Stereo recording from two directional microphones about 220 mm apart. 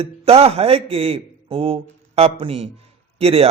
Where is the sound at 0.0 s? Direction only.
25° right (ahead or behind).